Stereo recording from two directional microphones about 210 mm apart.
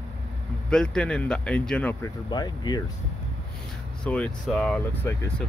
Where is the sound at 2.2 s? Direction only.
20° left (ahead or behind).